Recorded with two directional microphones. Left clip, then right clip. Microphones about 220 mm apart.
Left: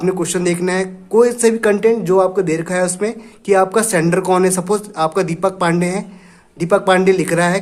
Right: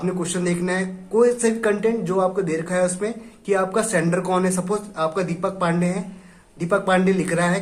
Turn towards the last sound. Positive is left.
turn(degrees=50)  # may be behind; listen again after turning